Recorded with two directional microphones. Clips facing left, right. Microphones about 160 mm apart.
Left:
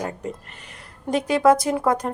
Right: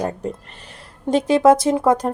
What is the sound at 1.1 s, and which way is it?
A woman's voice, 25° right (ahead or behind).